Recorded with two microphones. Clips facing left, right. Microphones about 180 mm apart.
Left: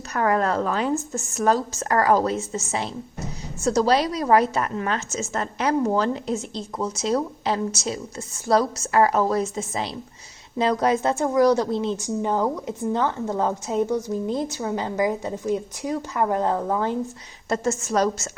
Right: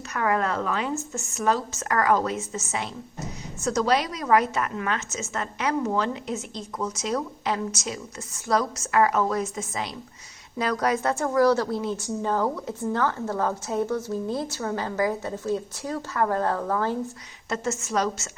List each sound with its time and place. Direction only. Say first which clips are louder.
0.1 s a woman's voice: left 3 dB; 40° left (ahead or behind)
3.6 s a woman's voice: left 4 dB; 30° left (ahead or behind)
17.5 s a woman's voice: left 4 dB; 35° left (ahead or behind)